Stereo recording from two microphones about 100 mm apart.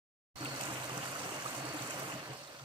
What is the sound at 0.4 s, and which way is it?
Stream, 50° right (ahead or behind).